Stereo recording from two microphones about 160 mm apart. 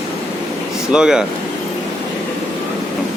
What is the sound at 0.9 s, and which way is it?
Speech, 5° right (ahead or behind).